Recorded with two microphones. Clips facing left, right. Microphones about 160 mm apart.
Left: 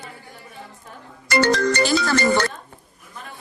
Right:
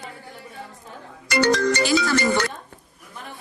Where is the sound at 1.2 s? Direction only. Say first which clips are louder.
Left 1 dB; 50° left (ahead or behind).